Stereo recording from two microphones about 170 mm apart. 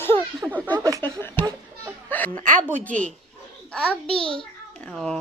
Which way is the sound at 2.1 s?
10° left (ahead or behind).